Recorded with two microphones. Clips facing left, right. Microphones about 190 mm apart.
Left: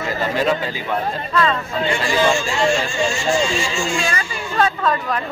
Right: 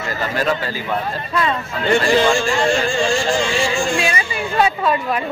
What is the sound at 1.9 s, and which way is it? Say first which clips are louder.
A man's voice: right 4 dB; 55° right (ahead or behind).